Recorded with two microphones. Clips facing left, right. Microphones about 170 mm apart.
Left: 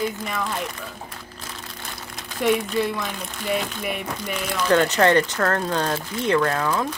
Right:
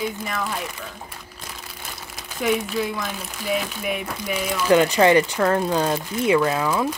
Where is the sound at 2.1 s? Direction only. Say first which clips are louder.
Left 1 dB; centre (ahead or behind).